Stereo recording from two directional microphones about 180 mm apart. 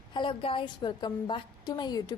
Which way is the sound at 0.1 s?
30° left (ahead or behind).